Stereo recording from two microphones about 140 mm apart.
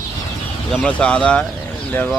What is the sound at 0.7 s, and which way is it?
Speech, 5° left (ahead or behind).